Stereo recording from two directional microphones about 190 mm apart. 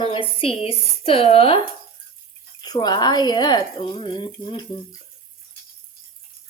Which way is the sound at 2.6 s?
20° left (ahead or behind).